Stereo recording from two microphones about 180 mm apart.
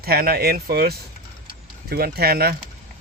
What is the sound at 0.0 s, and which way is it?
A man's voice, 55° right (ahead or behind).